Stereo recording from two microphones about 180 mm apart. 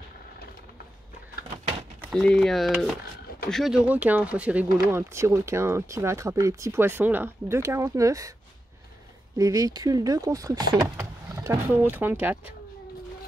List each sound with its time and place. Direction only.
2.1 s speech: centre (ahead or behind); by 8.3 s 20° right (ahead or behind)
9.4 s speech: 20° right (ahead or behind)